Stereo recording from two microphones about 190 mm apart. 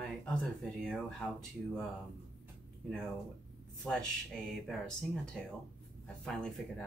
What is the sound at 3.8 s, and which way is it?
Speech, 5° left (ahead or behind).